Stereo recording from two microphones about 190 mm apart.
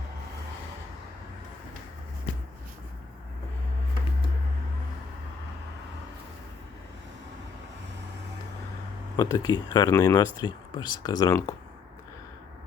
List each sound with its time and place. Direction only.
9.1 s speech: 20° left (ahead or behind)